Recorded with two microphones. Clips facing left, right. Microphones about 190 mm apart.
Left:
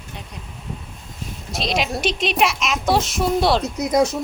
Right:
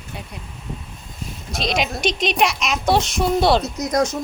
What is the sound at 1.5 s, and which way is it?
Speech, centre (ahead or behind).